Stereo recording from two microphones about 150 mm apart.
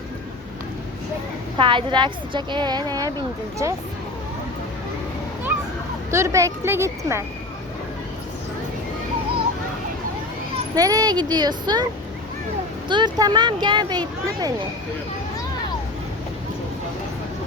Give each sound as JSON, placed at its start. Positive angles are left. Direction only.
{"t": 1.5, "sound": "a woman's voice", "side_deg": -35}
{"t": 6.1, "sound": "speech", "side_deg": -20}
{"t": 10.8, "sound": "speech", "side_deg": -25}
{"t": 12.9, "sound": "speech", "side_deg": -30}